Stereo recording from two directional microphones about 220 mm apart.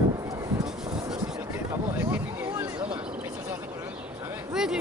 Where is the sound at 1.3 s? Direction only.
10° right (ahead or behind).